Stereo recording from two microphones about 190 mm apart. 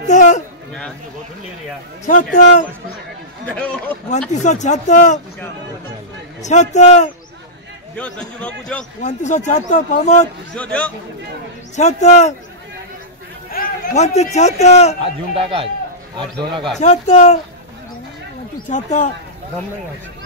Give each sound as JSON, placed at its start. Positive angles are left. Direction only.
{"t": 0.0, "sound": "speech", "side_deg": 40}
{"t": 2.0, "sound": "a man's voice", "side_deg": 40}
{"t": 3.4, "sound": "a man's voice", "side_deg": 5}
{"t": 4.3, "sound": "speech", "side_deg": 40}
{"t": 6.4, "sound": "speech", "side_deg": 40}
{"t": 7.9, "sound": "a man's voice", "side_deg": 5}
{"t": 9.0, "sound": "speech", "side_deg": 40}
{"t": 10.5, "sound": "a man's voice", "side_deg": 5}
{"t": 11.7, "sound": "speech", "side_deg": 40}
{"t": 13.5, "sound": "a man's voice", "side_deg": 45}
{"t": 16.8, "sound": "speech", "side_deg": 40}
{"t": 18.7, "sound": "speech", "side_deg": 40}